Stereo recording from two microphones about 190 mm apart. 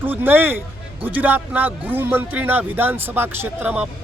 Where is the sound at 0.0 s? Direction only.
10° right (ahead or behind).